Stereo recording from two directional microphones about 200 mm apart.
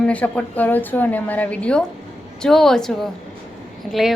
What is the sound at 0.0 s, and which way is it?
A woman's voice, 5° left (ahead or behind).